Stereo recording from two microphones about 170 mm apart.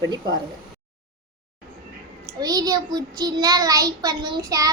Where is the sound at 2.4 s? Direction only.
20° right (ahead or behind).